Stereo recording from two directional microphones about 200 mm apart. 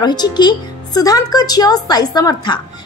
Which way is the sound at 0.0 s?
20° left (ahead or behind).